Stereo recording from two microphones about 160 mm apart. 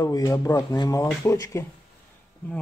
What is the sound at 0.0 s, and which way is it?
Speech, 20° left (ahead or behind).